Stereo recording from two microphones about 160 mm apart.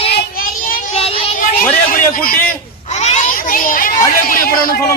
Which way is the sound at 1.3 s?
60° left (ahead or behind).